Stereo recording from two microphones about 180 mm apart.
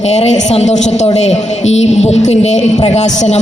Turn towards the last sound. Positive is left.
turn(degrees=40)  # may be behind; listen again after turning